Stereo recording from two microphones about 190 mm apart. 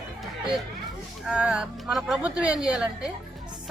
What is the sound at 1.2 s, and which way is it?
A woman's voice, 5° right (ahead or behind).